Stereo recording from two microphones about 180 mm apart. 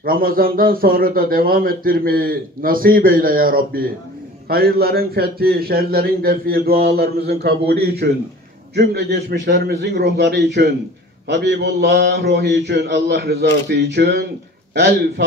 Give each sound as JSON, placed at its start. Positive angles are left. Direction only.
{"t": 0.0, "sound": "a man's voice", "side_deg": -55}